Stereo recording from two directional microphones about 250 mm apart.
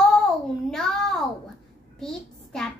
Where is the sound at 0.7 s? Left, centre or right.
Centre.